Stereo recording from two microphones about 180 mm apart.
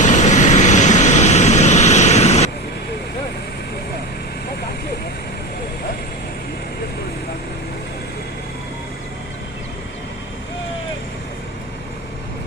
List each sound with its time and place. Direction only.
0.0 s vehicle: 40° left (ahead or behind)